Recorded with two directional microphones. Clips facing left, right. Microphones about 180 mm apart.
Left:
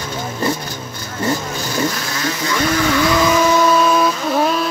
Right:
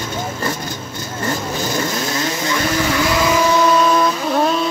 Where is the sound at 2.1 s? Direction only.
20° right (ahead or behind).